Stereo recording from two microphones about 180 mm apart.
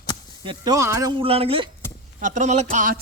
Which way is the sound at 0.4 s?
20° right (ahead or behind).